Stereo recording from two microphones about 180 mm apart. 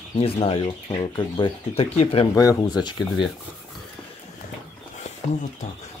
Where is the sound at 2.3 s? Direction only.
20° left (ahead or behind).